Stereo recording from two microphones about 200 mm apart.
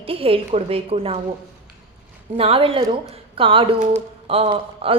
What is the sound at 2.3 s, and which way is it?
A woman's voice, 30° right (ahead or behind).